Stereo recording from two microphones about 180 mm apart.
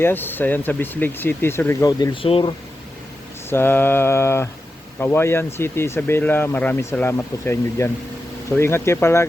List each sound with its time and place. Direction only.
0.0 s speech: 10° left (ahead or behind); by 2.6 s 30° left (ahead or behind)
3.5 s speech: 10° left (ahead or behind)